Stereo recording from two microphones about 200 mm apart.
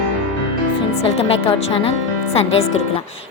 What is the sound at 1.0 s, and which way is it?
A woman's voice, 30° left (ahead or behind).